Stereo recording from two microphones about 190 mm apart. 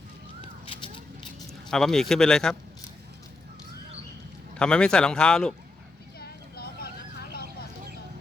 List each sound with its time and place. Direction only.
1.7 s speech: centre (ahead or behind)
4.5 s speech: 5° left (ahead or behind)
6.1 s vehicle: 55° left (ahead or behind)